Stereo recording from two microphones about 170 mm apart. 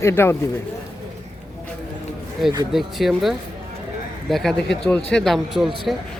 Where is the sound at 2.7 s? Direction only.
Centre (ahead or behind).